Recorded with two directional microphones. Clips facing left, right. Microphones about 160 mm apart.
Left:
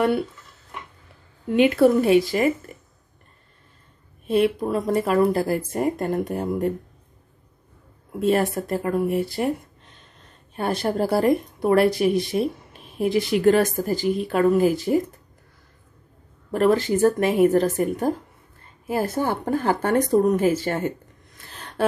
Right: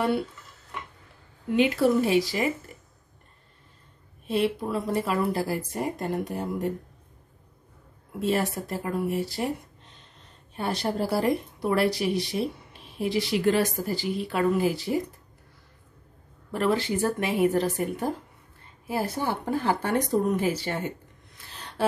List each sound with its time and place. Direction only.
1.6 s speech: 55° left (ahead or behind)
4.3 s a woman's voice: 50° left (ahead or behind)
8.2 s a woman's voice: 55° left (ahead or behind)
10.5 s a woman's voice: 50° left (ahead or behind)
16.5 s a woman's voice: 45° left (ahead or behind)
21.8 s a sound: 55° left (ahead or behind)